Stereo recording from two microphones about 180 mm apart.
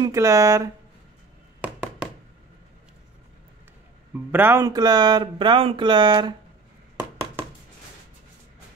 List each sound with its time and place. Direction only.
0.0 s speech: 20° right (ahead or behind)
4.1 s speech: 10° right (ahead or behind)
7.0 s a sound: 10° right (ahead or behind)